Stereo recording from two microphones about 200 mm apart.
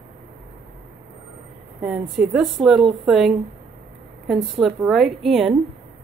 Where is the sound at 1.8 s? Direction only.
5° right (ahead or behind).